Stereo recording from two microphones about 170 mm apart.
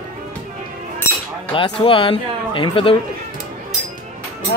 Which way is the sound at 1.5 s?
30° left (ahead or behind).